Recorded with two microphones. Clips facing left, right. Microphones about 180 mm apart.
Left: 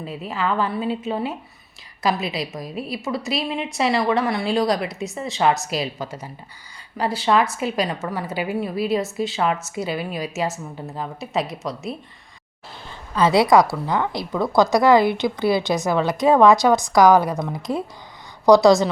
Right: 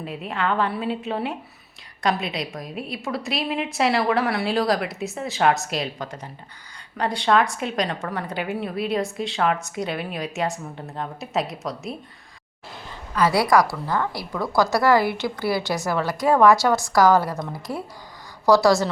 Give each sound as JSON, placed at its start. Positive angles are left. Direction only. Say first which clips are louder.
{"t": 0.0, "sound": "a woman's voice", "louder": "left 1 dB", "side_deg": 0}
{"t": 13.1, "sound": "a woman's voice", "louder": "left 3 dB", "side_deg": 25}